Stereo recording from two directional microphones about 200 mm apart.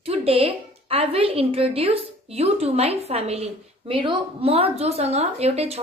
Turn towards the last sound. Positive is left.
turn(degrees=-30)  # may be behind; listen again after turning